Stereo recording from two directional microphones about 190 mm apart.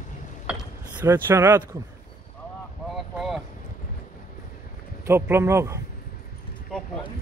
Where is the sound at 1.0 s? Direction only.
15° right (ahead or behind).